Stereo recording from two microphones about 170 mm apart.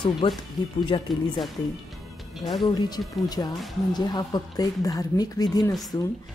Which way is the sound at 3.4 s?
20° left (ahead or behind).